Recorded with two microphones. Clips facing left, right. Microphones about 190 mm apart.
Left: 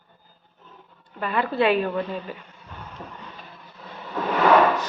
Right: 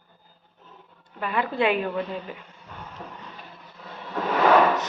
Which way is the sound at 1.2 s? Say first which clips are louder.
Left 2 dB; 10° right (ahead or behind).